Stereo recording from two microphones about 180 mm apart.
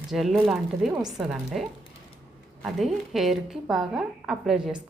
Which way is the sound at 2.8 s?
Centre (ahead or behind).